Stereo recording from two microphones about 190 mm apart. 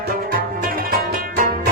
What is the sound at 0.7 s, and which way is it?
Music, 50° right (ahead or behind).